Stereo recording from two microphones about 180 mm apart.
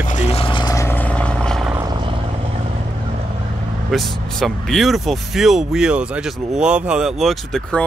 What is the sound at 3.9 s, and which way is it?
Speech, centre (ahead or behind).